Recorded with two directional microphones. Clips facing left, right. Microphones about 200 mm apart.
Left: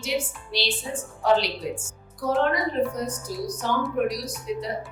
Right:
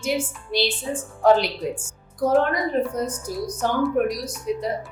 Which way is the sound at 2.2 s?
50° right (ahead or behind).